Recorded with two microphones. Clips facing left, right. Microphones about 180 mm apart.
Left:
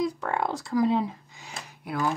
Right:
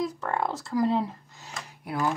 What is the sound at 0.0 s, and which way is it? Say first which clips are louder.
Speech: left 1 dB; centre (ahead or behind).